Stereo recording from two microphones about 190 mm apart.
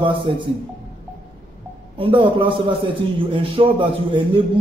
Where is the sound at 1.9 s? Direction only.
25° right (ahead or behind).